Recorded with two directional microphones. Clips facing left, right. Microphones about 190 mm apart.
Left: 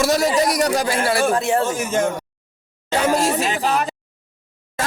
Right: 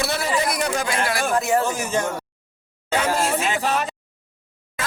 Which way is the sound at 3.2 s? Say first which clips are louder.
Left 2 dB; 40° left (ahead or behind).